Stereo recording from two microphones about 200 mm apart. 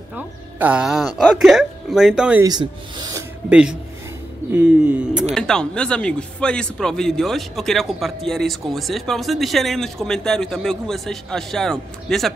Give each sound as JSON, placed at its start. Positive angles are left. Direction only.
{"t": 0.1, "sound": "speech", "side_deg": -5}
{"t": 2.4, "sound": "speech", "side_deg": -20}
{"t": 3.4, "sound": "speech", "side_deg": -5}
{"t": 4.5, "sound": "a sound", "side_deg": -5}
{"t": 5.3, "sound": "speech", "side_deg": 5}